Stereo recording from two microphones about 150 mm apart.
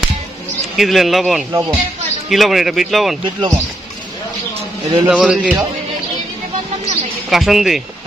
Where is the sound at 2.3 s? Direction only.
Centre (ahead or behind).